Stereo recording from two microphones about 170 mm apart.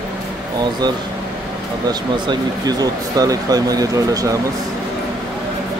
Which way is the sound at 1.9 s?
25° right (ahead or behind).